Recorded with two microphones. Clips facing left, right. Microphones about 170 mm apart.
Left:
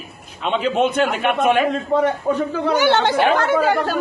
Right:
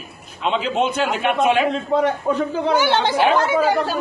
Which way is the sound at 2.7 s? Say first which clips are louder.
Left 2 dB; 65° left (ahead or behind).